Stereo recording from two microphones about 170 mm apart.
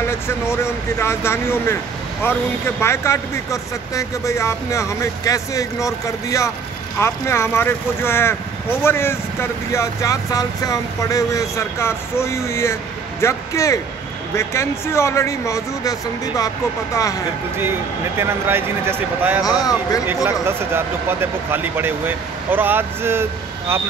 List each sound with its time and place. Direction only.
0.0 s speech: 15° left (ahead or behind)
18.2 s speech: 15° right (ahead or behind)
19.4 s speech: 20° left (ahead or behind)
20.2 s speech: 15° right (ahead or behind)